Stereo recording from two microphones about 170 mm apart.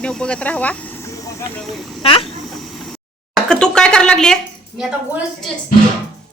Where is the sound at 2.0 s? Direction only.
35° left (ahead or behind).